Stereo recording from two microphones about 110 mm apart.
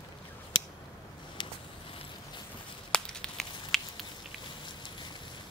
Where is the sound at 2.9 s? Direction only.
5° left (ahead or behind).